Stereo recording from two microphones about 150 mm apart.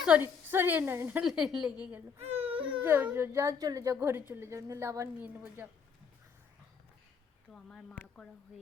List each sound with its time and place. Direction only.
0.2 s a woman's voice: 15° right (ahead or behind)
2.1 s baby cry: 45° right (ahead or behind)
2.8 s a woman's voice: 15° right (ahead or behind)
7.5 s speech: 5° left (ahead or behind)